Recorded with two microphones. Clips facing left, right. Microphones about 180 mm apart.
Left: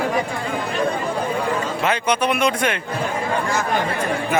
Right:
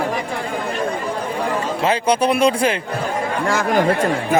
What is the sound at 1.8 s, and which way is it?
Speech, 30° right (ahead or behind).